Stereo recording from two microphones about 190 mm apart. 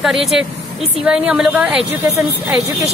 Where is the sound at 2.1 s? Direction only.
15° right (ahead or behind).